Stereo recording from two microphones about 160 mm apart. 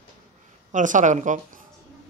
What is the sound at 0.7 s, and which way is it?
Speech, 50° right (ahead or behind).